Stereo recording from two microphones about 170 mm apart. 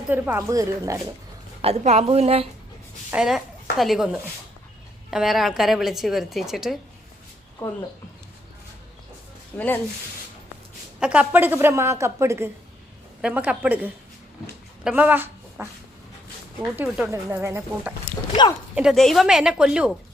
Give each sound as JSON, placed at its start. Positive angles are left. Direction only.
{"t": 0.1, "sound": "speech", "side_deg": -10}
{"t": 1.6, "sound": "a woman's voice", "side_deg": -40}
{"t": 3.1, "sound": "a woman's voice", "side_deg": -5}
{"t": 7.6, "sound": "a woman's voice", "side_deg": 15}
{"t": 9.5, "sound": "a woman's voice", "side_deg": 10}
{"t": 11.0, "sound": "a woman's voice", "side_deg": -5}
{"t": 16.7, "sound": "a woman's voice", "side_deg": -10}